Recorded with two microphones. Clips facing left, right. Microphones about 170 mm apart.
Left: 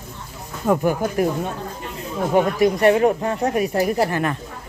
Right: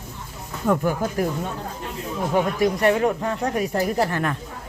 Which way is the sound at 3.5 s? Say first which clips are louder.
Left 2 dB; 10° left (ahead or behind).